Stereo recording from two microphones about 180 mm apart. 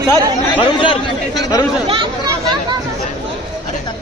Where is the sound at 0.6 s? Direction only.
30° left (ahead or behind).